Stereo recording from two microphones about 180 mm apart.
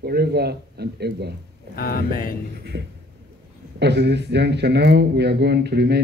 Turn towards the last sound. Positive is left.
turn(degrees=-65)  # may be behind; listen again after turning